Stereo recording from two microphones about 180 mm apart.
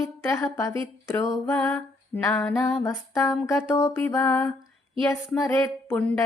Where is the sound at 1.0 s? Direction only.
15° left (ahead or behind).